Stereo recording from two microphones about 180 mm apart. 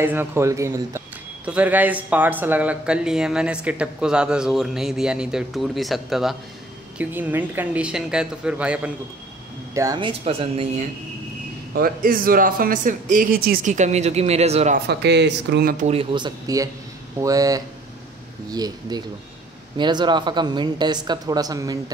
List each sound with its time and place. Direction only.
0.0 s speech: 10° right (ahead or behind)
9.8 s speech: 25° right (ahead or behind)
11.7 s speech: 55° right (ahead or behind); by 14.8 s 35° right (ahead or behind)
14.9 s speech: 70° right (ahead or behind)
15.8 s speech: 35° right (ahead or behind)